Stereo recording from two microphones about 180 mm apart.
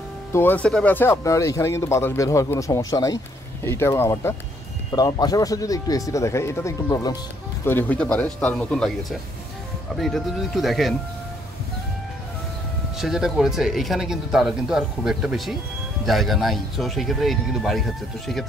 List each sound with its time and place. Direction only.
0.3 s speech: 10° left (ahead or behind)
7.6 s speech: 10° left (ahead or behind)
9.9 s speech: centre (ahead or behind)
13.0 s speech: centre (ahead or behind)